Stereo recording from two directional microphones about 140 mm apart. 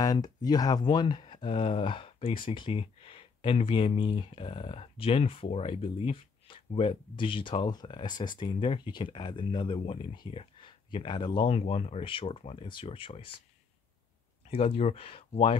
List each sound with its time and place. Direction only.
0.0 s speech: 25° left (ahead or behind)
14.5 s speech: 45° left (ahead or behind)